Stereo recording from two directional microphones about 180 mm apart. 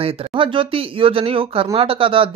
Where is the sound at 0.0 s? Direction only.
35° right (ahead or behind).